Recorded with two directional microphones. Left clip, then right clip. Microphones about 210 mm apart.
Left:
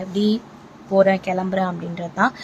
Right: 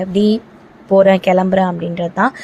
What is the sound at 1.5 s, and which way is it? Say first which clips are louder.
Speech: right 8 dB; 20° right (ahead or behind).